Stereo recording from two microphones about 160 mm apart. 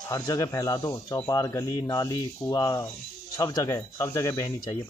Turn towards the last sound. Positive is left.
turn(degrees=20)  # may be behind; listen again after turning